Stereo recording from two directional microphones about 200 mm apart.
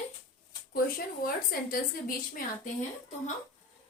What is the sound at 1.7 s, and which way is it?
Speech, 45° left (ahead or behind).